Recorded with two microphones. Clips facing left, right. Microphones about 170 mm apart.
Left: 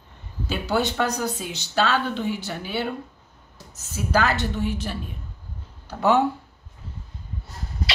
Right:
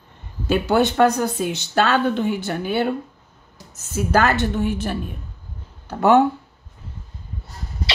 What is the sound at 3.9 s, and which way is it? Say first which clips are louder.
A woman's voice: right 4 dB; 50° right (ahead or behind).